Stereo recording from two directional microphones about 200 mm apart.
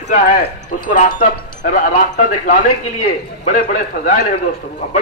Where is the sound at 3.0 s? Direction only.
40° left (ahead or behind).